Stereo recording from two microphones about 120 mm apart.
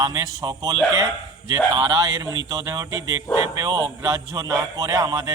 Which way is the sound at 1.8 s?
30° right (ahead or behind).